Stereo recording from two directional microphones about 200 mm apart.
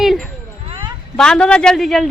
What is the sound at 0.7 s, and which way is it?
Cat, 25° right (ahead or behind).